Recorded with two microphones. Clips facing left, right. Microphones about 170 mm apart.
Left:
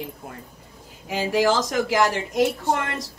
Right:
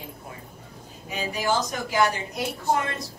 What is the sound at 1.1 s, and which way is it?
A woman's voice, 90° left.